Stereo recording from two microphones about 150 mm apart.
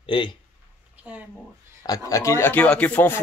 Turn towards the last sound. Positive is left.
turn(degrees=10)  # may be behind; listen again after turning